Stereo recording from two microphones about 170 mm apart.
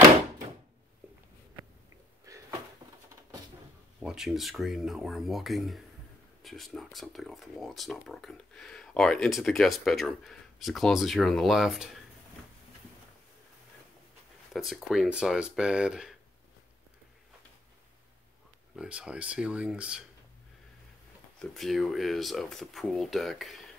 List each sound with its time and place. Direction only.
2.3 s a sound: 20° right (ahead or behind)
4.0 s speech: 5° right (ahead or behind)
14.5 s speech: centre (ahead or behind)
18.8 s speech: 5° right (ahead or behind)
21.4 s speech: centre (ahead or behind)